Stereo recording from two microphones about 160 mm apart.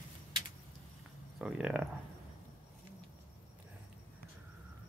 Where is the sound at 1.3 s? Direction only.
5° right (ahead or behind).